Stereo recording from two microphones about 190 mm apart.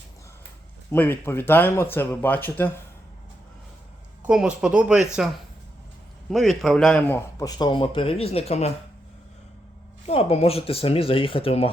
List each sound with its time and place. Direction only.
0.9 s speech: 10° left (ahead or behind)
4.3 s speech: 5° right (ahead or behind)
6.3 s speech: centre (ahead or behind); by 8.7 s 35° left (ahead or behind)
10.1 s speech: 30° left (ahead or behind)